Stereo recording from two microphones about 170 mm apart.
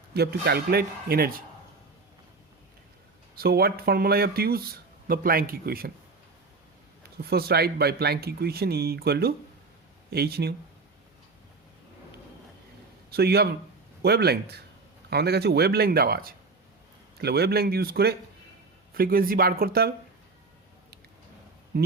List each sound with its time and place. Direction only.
0.1 s speech: 70° right (ahead or behind)
3.3 s speech: 65° right (ahead or behind)
7.2 s speech: 65° right (ahead or behind)
13.1 s a man's voice: 65° right (ahead or behind)
21.7 s a sound: 60° right (ahead or behind)